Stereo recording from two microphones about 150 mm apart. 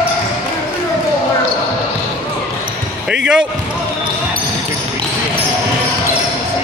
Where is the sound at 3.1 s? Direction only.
5° right (ahead or behind).